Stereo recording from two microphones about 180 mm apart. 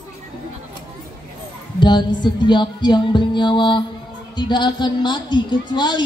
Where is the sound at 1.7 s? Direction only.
25° left (ahead or behind).